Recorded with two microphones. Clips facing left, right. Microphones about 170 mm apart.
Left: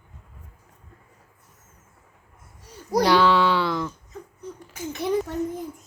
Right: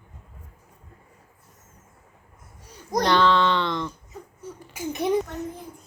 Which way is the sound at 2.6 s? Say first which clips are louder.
Left 3 dB; 10° left (ahead or behind).